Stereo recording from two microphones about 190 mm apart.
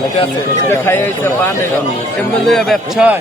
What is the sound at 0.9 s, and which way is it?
Speech, 10° left (ahead or behind).